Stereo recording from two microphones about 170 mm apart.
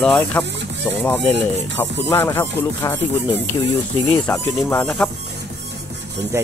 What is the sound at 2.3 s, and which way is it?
Speech, 15° left (ahead or behind).